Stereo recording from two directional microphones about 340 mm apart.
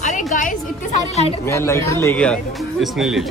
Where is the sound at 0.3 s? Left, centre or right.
Left.